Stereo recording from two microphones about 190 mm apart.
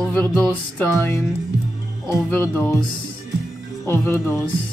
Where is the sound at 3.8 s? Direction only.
15° left (ahead or behind).